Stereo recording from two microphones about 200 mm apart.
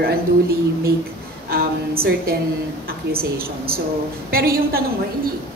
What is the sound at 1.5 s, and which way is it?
A woman's voice, 50° right (ahead or behind).